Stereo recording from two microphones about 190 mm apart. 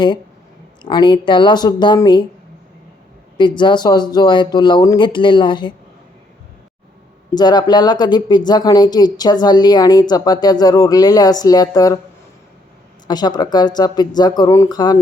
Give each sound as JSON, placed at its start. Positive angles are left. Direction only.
{"t": 0.8, "sound": "speech", "side_deg": 25}
{"t": 3.3, "sound": "speech", "side_deg": 25}
{"t": 7.3, "sound": "speech", "side_deg": 20}
{"t": 13.1, "sound": "speech", "side_deg": 20}